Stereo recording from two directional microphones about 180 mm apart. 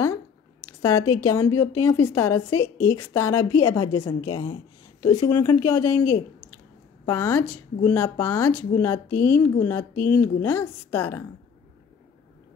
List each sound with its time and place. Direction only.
0.0 s a woman's voice: 15° left (ahead or behind)